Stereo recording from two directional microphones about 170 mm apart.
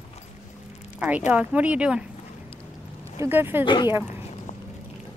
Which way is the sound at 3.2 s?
15° right (ahead or behind).